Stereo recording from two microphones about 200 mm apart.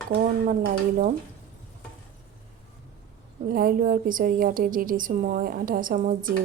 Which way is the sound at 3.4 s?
45° right (ahead or behind).